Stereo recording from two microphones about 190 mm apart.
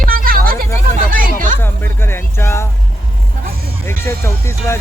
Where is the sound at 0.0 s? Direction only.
50° right (ahead or behind).